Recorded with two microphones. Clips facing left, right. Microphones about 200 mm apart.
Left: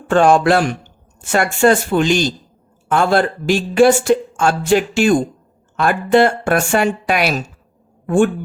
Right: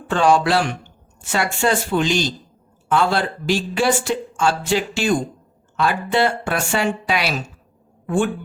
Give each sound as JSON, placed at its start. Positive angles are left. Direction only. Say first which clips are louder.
{"t": 0.1, "sound": "speech", "louder": "left 5 dB", "side_deg": 50}